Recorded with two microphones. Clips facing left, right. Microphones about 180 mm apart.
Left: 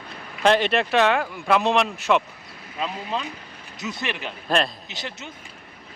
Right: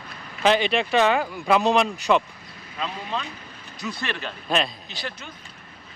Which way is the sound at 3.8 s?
20° left (ahead or behind).